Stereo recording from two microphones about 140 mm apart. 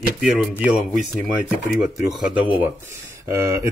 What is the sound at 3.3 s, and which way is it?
Speech, 20° right (ahead or behind).